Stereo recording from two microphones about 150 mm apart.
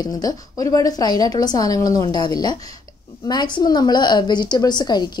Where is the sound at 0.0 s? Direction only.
25° left (ahead or behind).